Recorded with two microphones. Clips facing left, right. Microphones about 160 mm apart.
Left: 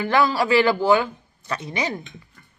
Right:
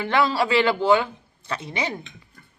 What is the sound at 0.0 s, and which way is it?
A man's voice, 25° right (ahead or behind).